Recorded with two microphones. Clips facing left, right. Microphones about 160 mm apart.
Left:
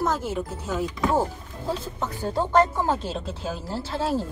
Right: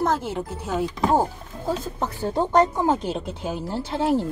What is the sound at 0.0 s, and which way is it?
Speech, 65° right (ahead or behind).